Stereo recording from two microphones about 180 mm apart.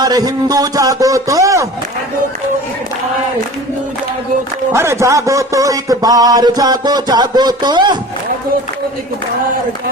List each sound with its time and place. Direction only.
0.0 s a man's voice: 20° right (ahead or behind)
4.7 s a man's voice: 15° right (ahead or behind)